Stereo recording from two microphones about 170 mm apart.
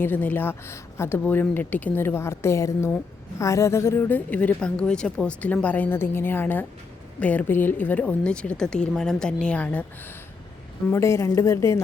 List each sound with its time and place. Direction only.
0.0 s a woman's voice: 10° left (ahead or behind)
10.9 s a woman's voice: 15° left (ahead or behind)